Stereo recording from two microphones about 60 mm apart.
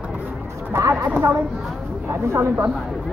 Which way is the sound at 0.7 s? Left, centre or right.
Right.